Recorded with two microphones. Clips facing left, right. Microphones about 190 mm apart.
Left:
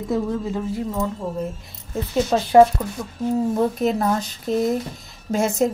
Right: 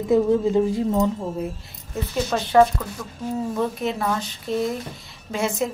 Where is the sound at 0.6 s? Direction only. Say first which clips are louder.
Right 5 dB; 25° right (ahead or behind).